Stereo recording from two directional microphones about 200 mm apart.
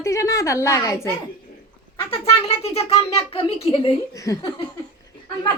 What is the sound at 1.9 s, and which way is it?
Speech, 30° left (ahead or behind).